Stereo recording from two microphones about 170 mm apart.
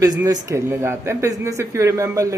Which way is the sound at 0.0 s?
20° right (ahead or behind).